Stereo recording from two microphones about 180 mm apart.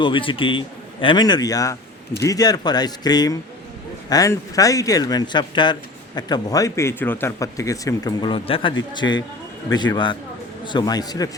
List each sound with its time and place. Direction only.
0.0 s speech: 30° left (ahead or behind)